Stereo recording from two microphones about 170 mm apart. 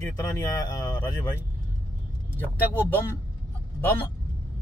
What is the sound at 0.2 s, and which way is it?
Speech, 20° left (ahead or behind).